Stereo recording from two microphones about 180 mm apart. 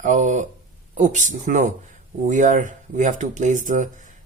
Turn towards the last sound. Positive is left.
turn(degrees=-45)  # may be behind; listen again after turning